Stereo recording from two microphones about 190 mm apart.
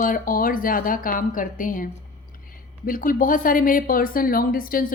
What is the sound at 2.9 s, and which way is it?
Speech, 45° left (ahead or behind).